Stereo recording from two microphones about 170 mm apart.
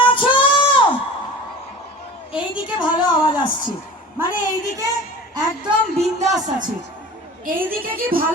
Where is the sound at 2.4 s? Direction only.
30° left (ahead or behind).